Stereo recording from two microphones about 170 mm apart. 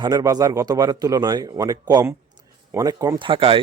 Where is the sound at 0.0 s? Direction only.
20° right (ahead or behind).